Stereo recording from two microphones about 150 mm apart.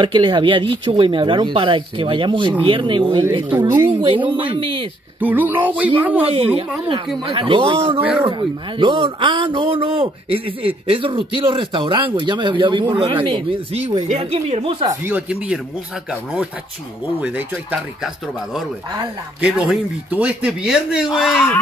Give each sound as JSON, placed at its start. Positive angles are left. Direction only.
{"t": 0.0, "sound": "speech", "side_deg": -30}
{"t": 3.5, "sound": "speech", "side_deg": -15}
{"t": 4.0, "sound": "speech", "side_deg": -35}
{"t": 5.2, "sound": "speech", "side_deg": -10}
{"t": 6.3, "sound": "speech", "side_deg": -40}
{"t": 8.0, "sound": "speech", "side_deg": -10}
{"t": 8.3, "sound": "speech", "side_deg": -35}
{"t": 14.9, "sound": "speech", "side_deg": -10}
{"t": 17.2, "sound": "speech", "side_deg": -10}